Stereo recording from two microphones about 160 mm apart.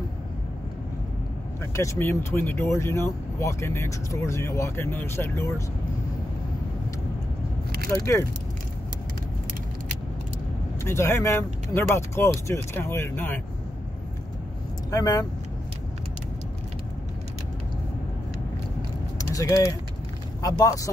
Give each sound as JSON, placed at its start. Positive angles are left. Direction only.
{"t": 1.8, "sound": "speech", "side_deg": 15}
{"t": 10.8, "sound": "speech", "side_deg": 15}
{"t": 14.9, "sound": "speech", "side_deg": 20}
{"t": 19.1, "sound": "a sound", "side_deg": 20}
{"t": 20.4, "sound": "speech", "side_deg": 20}